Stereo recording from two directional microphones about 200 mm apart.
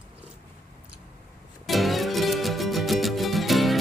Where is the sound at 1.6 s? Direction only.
Centre (ahead or behind).